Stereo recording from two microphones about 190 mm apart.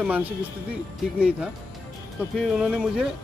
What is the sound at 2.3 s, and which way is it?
Speech, 5° right (ahead or behind).